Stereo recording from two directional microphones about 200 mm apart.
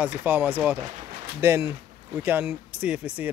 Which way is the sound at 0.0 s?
10° right (ahead or behind).